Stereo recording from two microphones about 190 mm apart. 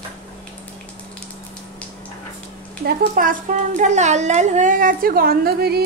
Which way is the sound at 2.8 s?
45° right (ahead or behind).